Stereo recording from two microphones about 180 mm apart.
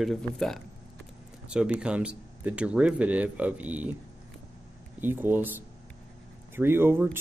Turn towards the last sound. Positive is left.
turn(degrees=-10)  # may be behind; listen again after turning